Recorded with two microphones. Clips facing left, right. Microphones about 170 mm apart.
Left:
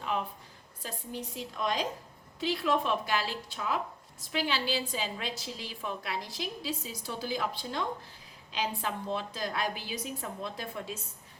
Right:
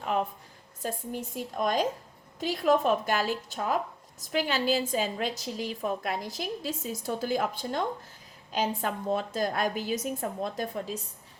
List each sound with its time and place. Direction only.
0.8 s a woman's voice: 50° right (ahead or behind)